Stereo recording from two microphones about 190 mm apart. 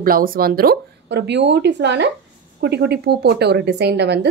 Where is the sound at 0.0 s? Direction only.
50° right (ahead or behind).